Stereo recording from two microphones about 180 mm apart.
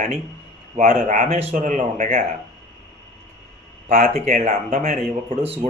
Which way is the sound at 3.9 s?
40° right (ahead or behind).